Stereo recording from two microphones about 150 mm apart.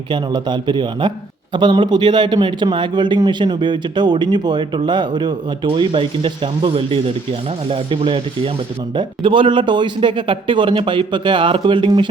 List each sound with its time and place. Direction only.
0.1 s a man's voice: 30° right (ahead or behind)